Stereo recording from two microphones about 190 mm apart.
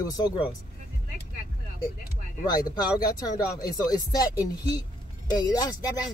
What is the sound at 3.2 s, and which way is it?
Speech, 20° left (ahead or behind).